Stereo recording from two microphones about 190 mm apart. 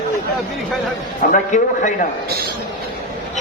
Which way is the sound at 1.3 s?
40° left (ahead or behind).